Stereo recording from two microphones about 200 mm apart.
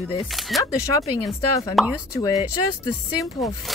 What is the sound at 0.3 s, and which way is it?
Speech, centre (ahead or behind).